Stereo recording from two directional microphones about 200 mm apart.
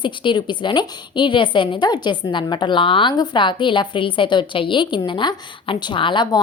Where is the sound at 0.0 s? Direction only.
25° left (ahead or behind).